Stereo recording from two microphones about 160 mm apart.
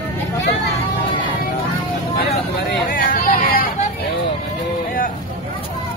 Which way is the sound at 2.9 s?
65° left (ahead or behind).